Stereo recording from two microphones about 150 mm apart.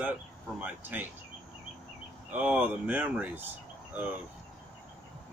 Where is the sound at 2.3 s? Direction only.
10° right (ahead or behind).